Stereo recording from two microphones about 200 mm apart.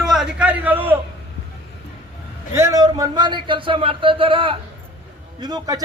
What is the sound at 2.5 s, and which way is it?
A man's voice, 15° right (ahead or behind).